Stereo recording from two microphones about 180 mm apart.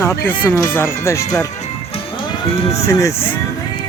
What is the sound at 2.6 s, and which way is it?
Speech, 35° left (ahead or behind).